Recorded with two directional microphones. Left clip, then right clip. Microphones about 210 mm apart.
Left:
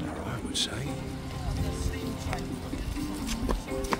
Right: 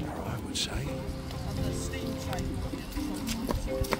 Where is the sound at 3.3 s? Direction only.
25° right (ahead or behind).